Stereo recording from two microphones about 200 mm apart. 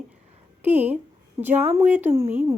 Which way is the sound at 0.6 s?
10° right (ahead or behind).